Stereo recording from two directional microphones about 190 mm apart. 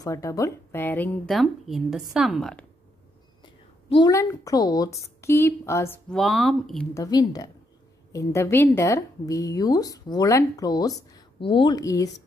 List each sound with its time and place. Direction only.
0.0 s a woman's voice: 20° left (ahead or behind); by 2.6 s centre (ahead or behind)
3.4 s a woman's voice: 25° left (ahead or behind)
6.0 s speech: centre (ahead or behind)
6.9 s a woman's voice: 20° left (ahead or behind)